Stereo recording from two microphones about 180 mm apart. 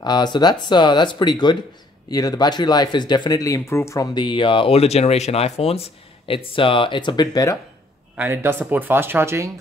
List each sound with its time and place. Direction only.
0.0 s speech: 25° left (ahead or behind)
8.2 s speech: 10° right (ahead or behind)